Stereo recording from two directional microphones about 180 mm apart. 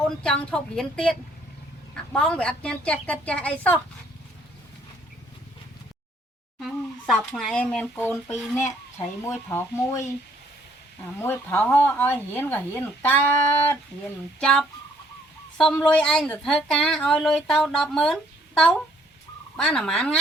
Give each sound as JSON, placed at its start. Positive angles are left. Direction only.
{"t": 0.2, "sound": "a woman's voice", "side_deg": 5}
{"t": 2.1, "sound": "a woman's voice", "side_deg": 5}
{"t": 6.6, "sound": "speech", "side_deg": 0}
{"t": 11.2, "sound": "a woman's voice", "side_deg": 10}